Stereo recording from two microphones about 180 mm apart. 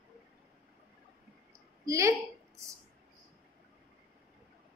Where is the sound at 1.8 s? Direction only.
15° right (ahead or behind).